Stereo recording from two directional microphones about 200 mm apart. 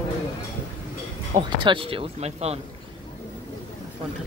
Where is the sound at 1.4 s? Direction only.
25° right (ahead or behind).